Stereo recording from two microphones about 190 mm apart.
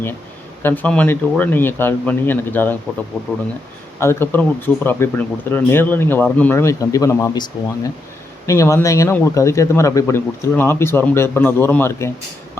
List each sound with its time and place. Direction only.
0.6 s speech: 10° left (ahead or behind)